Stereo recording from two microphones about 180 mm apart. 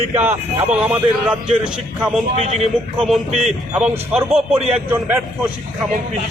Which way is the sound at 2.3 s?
40° right (ahead or behind).